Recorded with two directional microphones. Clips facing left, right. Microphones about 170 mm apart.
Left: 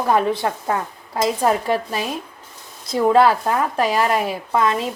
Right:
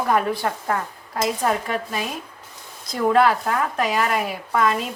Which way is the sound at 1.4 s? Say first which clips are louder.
Left 4 dB; 30° left (ahead or behind).